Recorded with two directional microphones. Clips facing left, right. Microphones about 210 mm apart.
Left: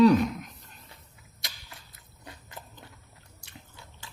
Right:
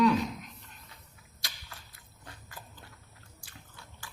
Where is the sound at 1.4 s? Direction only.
20° left (ahead or behind).